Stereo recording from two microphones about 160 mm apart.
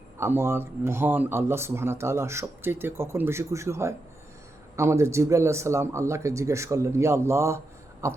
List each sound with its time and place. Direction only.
0.2 s speech: 15° right (ahead or behind)